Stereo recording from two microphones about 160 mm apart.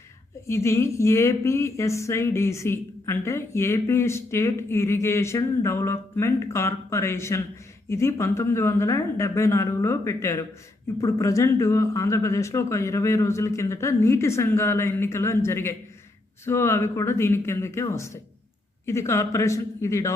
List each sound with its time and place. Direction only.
0.4 s a woman's voice: 20° left (ahead or behind)